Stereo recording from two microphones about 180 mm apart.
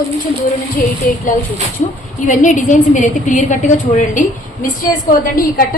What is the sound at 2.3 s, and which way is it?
A woman's voice, 45° left (ahead or behind).